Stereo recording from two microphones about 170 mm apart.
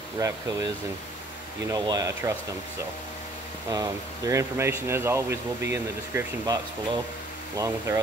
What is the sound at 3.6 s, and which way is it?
Speech, 20° right (ahead or behind).